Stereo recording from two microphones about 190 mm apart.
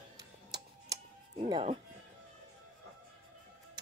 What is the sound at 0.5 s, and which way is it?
Music, 20° right (ahead or behind).